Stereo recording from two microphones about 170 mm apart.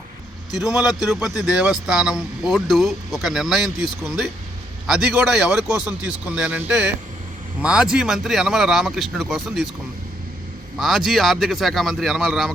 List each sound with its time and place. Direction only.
0.8 s speech: centre (ahead or behind)
10.8 s speech: centre (ahead or behind)